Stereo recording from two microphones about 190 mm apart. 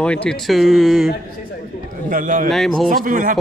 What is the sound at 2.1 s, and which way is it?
Speech, 45° right (ahead or behind).